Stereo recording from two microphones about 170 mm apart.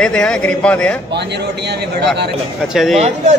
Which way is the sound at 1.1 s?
90° right.